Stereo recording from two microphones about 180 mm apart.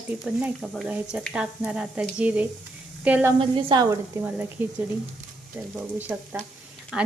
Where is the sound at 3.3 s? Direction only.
25° right (ahead or behind).